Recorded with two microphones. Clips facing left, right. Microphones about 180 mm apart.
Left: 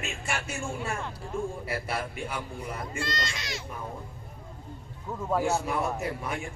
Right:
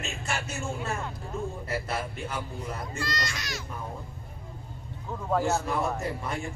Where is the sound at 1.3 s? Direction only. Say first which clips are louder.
Left 2 dB; 10° left (ahead or behind).